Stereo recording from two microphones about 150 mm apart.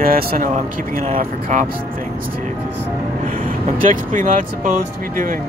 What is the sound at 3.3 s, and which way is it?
Speech, 65° right (ahead or behind).